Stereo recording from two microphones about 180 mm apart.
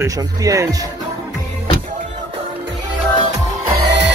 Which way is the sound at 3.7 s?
70° right (ahead or behind).